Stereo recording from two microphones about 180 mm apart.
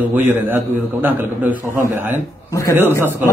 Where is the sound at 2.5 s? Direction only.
15° left (ahead or behind).